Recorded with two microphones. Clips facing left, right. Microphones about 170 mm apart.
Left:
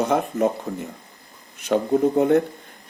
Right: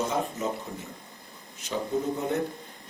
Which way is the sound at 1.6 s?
60° left (ahead or behind).